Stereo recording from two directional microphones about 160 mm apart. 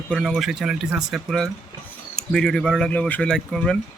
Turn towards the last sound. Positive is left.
turn(degrees=5)  # may be behind; listen again after turning